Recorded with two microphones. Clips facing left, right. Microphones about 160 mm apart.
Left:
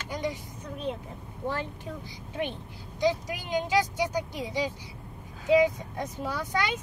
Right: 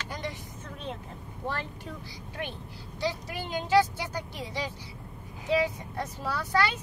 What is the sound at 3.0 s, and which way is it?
A child's voice, 15° left (ahead or behind).